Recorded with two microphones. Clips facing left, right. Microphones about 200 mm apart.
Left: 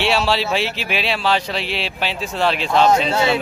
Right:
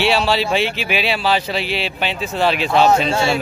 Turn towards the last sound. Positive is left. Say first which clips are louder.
# right 1 dB
turn(degrees=-10)  # may be behind; listen again after turning